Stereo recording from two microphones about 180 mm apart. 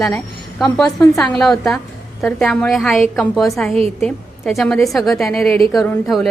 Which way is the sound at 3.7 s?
35° right (ahead or behind).